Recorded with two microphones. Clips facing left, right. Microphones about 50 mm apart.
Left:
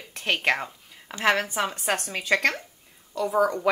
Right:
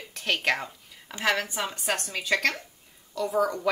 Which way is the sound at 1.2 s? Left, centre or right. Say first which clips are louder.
Left 4 dB; left.